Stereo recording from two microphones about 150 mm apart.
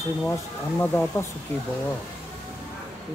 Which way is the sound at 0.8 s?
10° left (ahead or behind).